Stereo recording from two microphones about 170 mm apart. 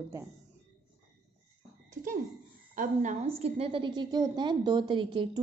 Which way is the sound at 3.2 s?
35° right (ahead or behind).